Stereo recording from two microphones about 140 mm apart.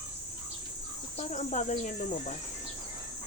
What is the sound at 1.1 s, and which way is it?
Speech, 55° left (ahead or behind).